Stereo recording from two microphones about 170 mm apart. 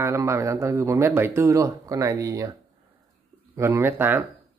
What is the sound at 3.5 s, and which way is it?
Speech, 15° right (ahead or behind).